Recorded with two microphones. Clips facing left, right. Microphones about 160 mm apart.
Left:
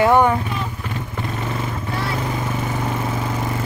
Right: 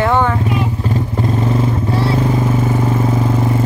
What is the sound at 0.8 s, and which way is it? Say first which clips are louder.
Vehicle: right 9 dB; 35° right (ahead or behind).